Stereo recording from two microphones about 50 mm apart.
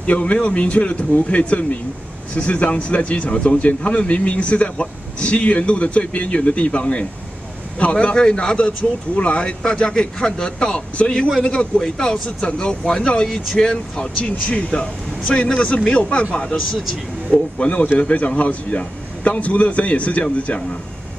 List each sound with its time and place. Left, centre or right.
0.0 s speech: left
17.3 s speech: left